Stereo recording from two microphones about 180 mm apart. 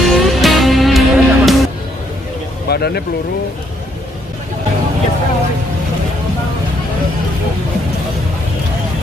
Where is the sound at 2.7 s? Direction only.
60° left (ahead or behind).